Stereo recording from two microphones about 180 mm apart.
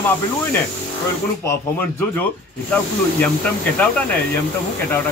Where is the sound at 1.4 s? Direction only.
10° left (ahead or behind).